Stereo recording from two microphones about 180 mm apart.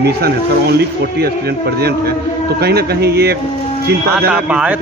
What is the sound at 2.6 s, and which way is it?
Speech, 65° right (ahead or behind).